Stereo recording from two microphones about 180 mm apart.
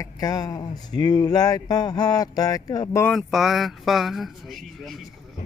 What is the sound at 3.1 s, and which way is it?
Speech, centre (ahead or behind).